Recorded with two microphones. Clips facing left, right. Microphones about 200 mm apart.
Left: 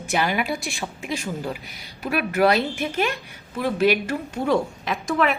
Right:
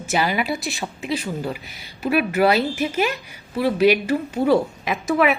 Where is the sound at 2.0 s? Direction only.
5° right (ahead or behind).